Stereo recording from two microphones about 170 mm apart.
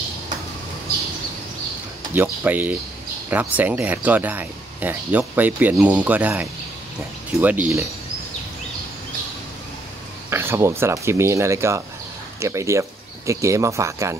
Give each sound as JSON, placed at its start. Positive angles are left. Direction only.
{"t": 2.1, "sound": "speech", "side_deg": -10}
{"t": 10.3, "sound": "speech", "side_deg": -15}